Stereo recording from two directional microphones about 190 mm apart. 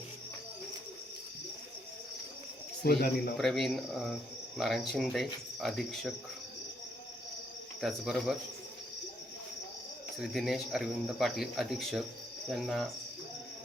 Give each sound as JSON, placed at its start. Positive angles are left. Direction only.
{"t": 2.8, "sound": "speech", "side_deg": 55}
{"t": 3.3, "sound": "speech", "side_deg": 0}
{"t": 7.8, "sound": "speech", "side_deg": 0}
{"t": 10.2, "sound": "speech", "side_deg": 0}